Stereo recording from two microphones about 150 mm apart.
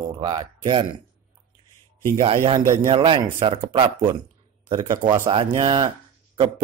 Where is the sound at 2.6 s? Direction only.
20° right (ahead or behind).